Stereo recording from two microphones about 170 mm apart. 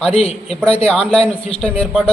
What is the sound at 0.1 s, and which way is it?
Speech, 35° left (ahead or behind).